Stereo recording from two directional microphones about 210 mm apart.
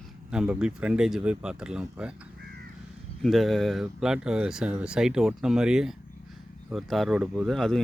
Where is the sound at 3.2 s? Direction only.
Centre (ahead or behind).